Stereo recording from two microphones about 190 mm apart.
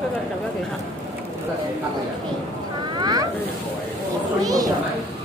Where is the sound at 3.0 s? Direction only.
20° right (ahead or behind).